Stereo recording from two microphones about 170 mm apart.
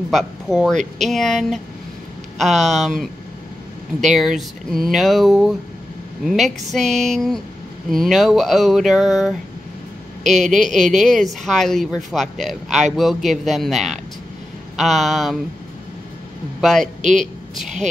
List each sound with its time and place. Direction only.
0.1 s speech: centre (ahead or behind)
16.6 s speech: centre (ahead or behind)
17.0 s speech: 45° right (ahead or behind)